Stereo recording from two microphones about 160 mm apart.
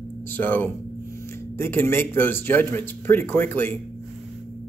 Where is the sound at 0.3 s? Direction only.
10° left (ahead or behind).